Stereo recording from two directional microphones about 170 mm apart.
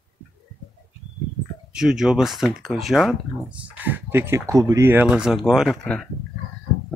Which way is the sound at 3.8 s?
10° right (ahead or behind).